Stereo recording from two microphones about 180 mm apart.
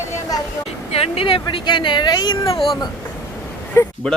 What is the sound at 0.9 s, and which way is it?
Speech, 35° left (ahead or behind).